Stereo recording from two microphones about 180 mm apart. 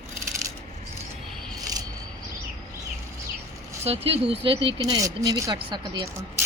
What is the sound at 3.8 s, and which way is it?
Speech, 35° right (ahead or behind).